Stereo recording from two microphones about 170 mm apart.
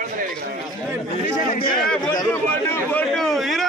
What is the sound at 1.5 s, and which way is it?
Speech, 55° left (ahead or behind).